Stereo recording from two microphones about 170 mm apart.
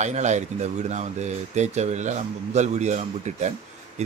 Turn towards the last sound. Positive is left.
turn(degrees=-40)  # may be behind; listen again after turning